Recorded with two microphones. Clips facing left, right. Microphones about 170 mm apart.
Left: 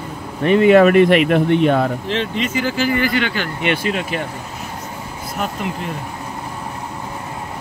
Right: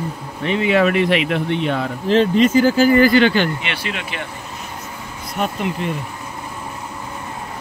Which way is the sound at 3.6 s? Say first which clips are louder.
Left 7 dB; 45° left (ahead or behind).